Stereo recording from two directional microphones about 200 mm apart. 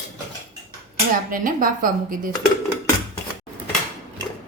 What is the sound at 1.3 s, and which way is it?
A woman's voice, 45° right (ahead or behind).